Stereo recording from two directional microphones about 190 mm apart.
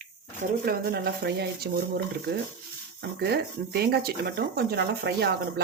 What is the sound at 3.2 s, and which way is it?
Speech, 55° right (ahead or behind).